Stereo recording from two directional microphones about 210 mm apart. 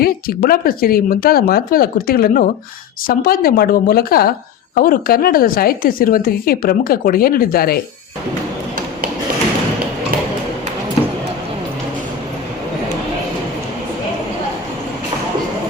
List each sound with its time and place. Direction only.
0.0 s a woman's voice: 45° left (ahead or behind)